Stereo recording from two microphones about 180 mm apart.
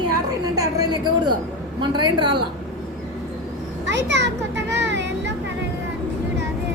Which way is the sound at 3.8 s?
80° right.